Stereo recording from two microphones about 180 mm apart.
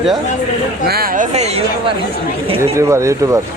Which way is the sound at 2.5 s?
15° right (ahead or behind).